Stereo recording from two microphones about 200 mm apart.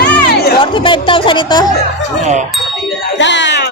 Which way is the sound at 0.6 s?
25° left (ahead or behind).